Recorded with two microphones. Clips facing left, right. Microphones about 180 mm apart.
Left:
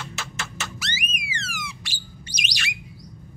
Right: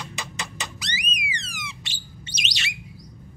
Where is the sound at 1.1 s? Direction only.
15° right (ahead or behind).